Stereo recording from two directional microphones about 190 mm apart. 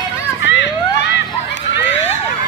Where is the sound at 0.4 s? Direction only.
70° left (ahead or behind).